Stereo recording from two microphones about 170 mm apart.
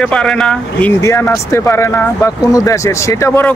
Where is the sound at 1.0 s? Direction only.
15° left (ahead or behind).